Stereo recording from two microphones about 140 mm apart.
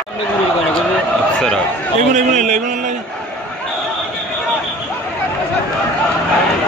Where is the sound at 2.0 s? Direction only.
60° right (ahead or behind).